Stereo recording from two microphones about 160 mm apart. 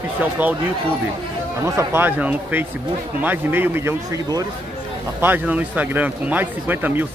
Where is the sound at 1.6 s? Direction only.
15° right (ahead or behind).